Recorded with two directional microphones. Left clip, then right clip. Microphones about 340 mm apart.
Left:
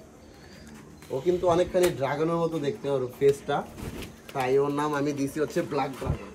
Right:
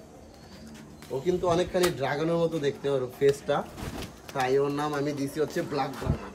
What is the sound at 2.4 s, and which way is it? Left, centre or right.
Speech, centre.